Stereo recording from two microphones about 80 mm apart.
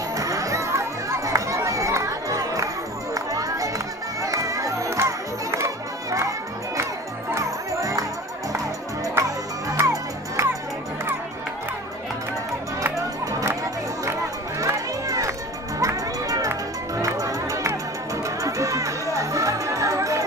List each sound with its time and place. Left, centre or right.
0.1 s music: right
6.8 s crowd: right
9.2 s music: right
13.2 s music: right
14.6 s run: right